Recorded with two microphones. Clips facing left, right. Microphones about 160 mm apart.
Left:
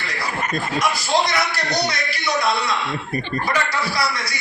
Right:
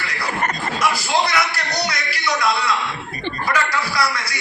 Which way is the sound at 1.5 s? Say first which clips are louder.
Left 2 dB; 25° left (ahead or behind).